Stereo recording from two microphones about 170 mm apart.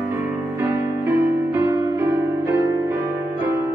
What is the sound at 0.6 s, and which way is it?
Music, 15° right (ahead or behind).